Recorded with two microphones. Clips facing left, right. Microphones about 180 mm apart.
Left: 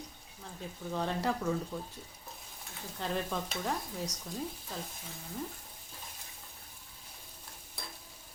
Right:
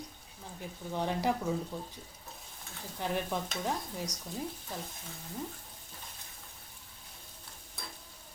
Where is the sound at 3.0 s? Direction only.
15° right (ahead or behind).